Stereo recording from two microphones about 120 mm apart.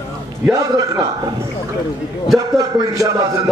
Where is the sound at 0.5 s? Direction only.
30° right (ahead or behind).